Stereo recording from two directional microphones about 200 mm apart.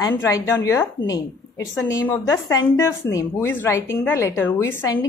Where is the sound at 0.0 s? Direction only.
15° left (ahead or behind).